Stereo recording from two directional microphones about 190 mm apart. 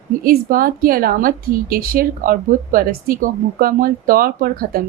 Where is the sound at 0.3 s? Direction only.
50° right (ahead or behind).